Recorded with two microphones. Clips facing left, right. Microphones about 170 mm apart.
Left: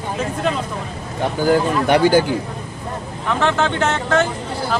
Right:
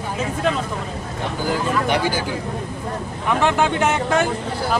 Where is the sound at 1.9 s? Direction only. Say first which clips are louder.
Left 12 dB; 55° left (ahead or behind).